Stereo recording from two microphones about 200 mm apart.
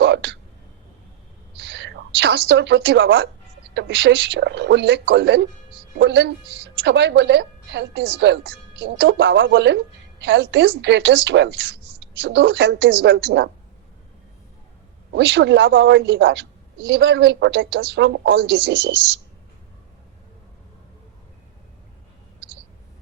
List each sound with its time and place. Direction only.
0.0 s speech: 60° right (ahead or behind)
1.6 s a woman's voice: 65° right (ahead or behind)
15.1 s a woman's voice: 60° right (ahead or behind)